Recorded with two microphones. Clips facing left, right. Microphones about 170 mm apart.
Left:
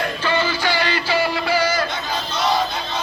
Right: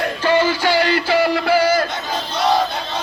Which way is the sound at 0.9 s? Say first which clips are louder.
Right 4 dB; 55° right (ahead or behind).